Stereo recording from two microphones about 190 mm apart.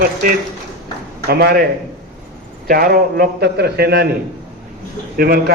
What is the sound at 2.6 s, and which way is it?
A man's voice, 50° right (ahead or behind).